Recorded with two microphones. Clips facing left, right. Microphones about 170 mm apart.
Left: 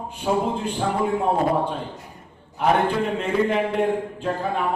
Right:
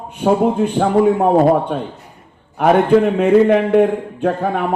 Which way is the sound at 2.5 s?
60° right (ahead or behind).